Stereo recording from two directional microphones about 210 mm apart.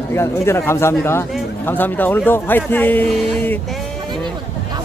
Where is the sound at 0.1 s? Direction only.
10° left (ahead or behind).